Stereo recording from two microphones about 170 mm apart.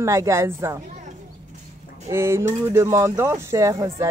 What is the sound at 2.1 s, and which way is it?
Speech, 15° right (ahead or behind).